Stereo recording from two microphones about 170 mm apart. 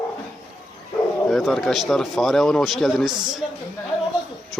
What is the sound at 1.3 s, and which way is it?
Speech, centre (ahead or behind).